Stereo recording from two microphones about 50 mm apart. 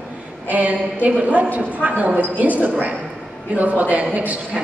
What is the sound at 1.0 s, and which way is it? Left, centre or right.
Singing, right.